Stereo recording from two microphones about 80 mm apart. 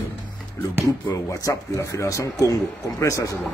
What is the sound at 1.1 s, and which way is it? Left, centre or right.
A man's voice, left.